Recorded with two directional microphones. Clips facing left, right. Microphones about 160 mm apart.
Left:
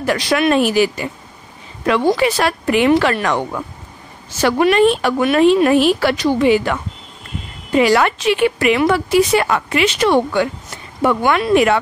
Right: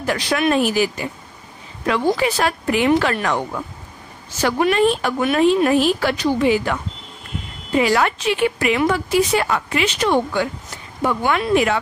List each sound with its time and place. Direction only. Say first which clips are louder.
0.0 s a woman's voice: left 3 dB; 80° left
4.4 s a woman's voice: left 4 dB; 75° left (ahead or behind)